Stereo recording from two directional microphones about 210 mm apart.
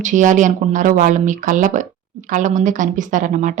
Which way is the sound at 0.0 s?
35° right (ahead or behind).